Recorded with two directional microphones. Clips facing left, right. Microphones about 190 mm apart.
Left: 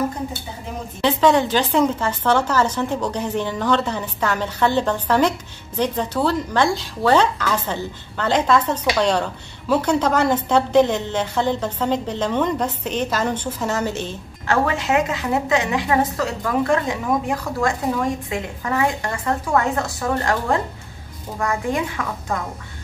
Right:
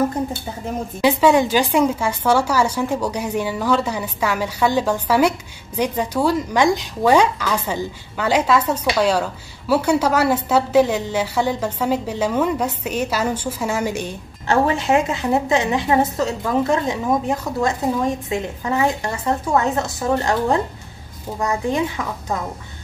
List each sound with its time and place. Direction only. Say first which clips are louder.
1.0 s speech: right 2 dB; 10° right (ahead or behind)
14.5 s a woman's voice: right 2 dB; 30° right (ahead or behind)